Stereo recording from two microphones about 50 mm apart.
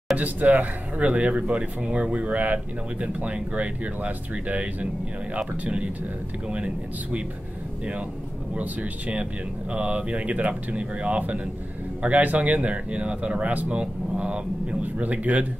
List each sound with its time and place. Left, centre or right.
0.2 s speech: right
8.5 s speech: right